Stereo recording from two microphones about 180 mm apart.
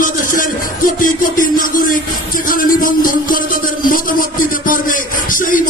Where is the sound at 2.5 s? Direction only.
50° left (ahead or behind).